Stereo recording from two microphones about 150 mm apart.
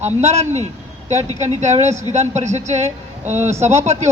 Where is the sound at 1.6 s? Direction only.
50° right (ahead or behind).